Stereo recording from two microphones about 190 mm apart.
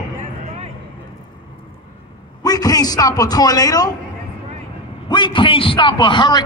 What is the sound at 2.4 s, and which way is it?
A man's voice, 20° left (ahead or behind).